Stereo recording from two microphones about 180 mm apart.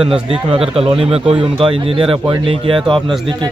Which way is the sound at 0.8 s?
30° right (ahead or behind).